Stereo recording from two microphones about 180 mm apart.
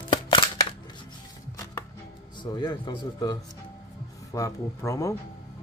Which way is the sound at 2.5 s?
25° left (ahead or behind).